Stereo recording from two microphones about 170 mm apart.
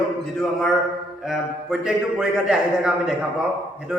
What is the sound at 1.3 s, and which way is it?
A man's voice, centre (ahead or behind).